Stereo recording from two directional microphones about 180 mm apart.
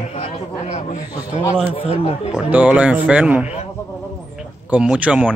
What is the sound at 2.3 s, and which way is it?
Speech, 10° right (ahead or behind).